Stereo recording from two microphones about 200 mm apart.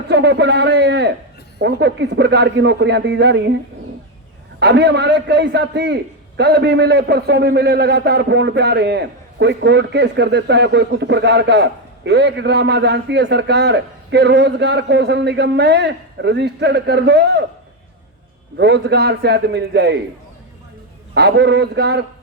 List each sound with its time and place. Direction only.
0.1 s a man's voice: 55° right (ahead or behind)
4.6 s a man's voice: 55° right (ahead or behind)
18.5 s a man's voice: 60° right (ahead or behind)
21.1 s a man's voice: 60° right (ahead or behind)